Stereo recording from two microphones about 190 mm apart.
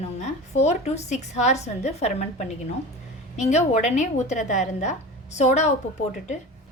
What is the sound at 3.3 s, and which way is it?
A woman's voice, 35° left (ahead or behind).